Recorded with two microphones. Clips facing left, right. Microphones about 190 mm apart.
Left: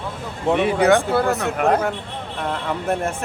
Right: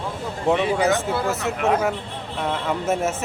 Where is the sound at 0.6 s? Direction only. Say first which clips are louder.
Left 4 dB; 60° left (ahead or behind).